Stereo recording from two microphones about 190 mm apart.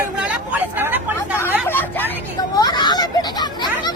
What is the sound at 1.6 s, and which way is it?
Vehicle, 10° left (ahead or behind).